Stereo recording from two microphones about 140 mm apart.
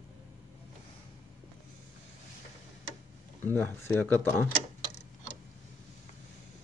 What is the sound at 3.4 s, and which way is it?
Speech, 15° left (ahead or behind).